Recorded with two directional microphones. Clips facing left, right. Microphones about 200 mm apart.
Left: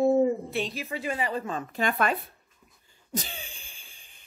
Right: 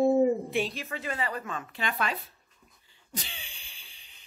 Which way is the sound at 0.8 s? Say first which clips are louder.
Left 3 dB; 15° left (ahead or behind).